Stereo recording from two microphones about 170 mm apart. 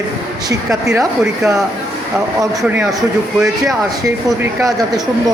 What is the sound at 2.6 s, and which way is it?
A man's voice, 10° right (ahead or behind).